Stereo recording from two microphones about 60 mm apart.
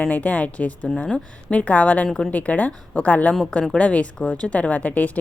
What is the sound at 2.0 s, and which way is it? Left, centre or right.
Speech, centre.